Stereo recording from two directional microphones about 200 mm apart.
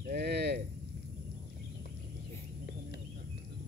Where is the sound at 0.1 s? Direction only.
55° right (ahead or behind).